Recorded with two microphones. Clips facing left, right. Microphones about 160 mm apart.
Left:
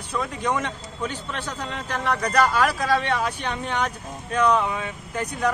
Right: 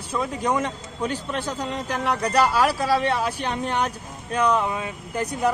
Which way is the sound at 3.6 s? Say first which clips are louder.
Even; 10° right (ahead or behind).